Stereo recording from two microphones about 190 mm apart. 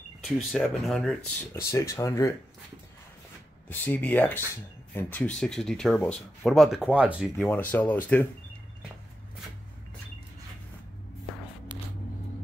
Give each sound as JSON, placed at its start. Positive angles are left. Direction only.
{"t": 0.2, "sound": "speech", "side_deg": 0}
{"t": 3.6, "sound": "speech", "side_deg": 10}
{"t": 7.4, "sound": "speech", "side_deg": 10}